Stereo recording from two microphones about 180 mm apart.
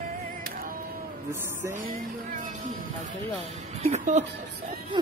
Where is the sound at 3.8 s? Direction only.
40° right (ahead or behind).